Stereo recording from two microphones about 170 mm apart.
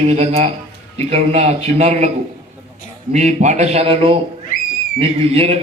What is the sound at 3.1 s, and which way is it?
A man's voice, 45° right (ahead or behind).